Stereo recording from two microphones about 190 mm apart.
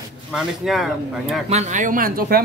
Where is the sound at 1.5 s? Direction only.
40° right (ahead or behind).